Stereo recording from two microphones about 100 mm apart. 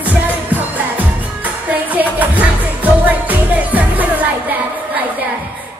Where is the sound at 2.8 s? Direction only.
15° right (ahead or behind).